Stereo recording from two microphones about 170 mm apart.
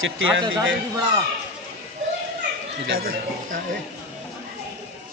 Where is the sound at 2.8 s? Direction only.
60° right (ahead or behind).